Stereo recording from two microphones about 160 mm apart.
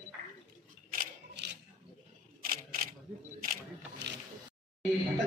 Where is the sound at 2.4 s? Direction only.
60° right (ahead or behind).